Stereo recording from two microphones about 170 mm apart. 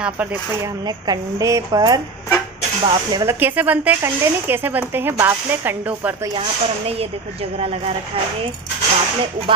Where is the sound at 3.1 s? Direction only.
20° right (ahead or behind).